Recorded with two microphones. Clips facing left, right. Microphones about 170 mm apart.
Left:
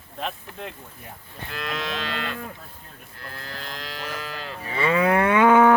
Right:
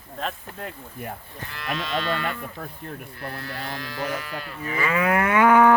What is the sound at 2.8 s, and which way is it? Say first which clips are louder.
Speech: right 13 dB; 65° right (ahead or behind).